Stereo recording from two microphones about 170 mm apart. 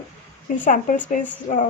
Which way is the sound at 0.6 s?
50° left (ahead or behind).